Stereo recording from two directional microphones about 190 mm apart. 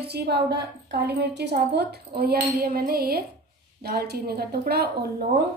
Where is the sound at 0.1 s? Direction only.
60° right (ahead or behind).